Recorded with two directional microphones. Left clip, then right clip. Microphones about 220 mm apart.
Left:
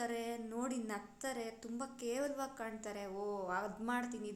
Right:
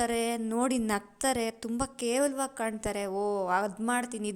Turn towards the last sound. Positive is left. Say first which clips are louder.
# right 9 dB
turn(degrees=-40)  # may be behind; listen again after turning